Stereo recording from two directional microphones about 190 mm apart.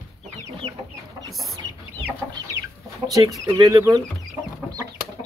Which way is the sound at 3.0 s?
20° right (ahead or behind).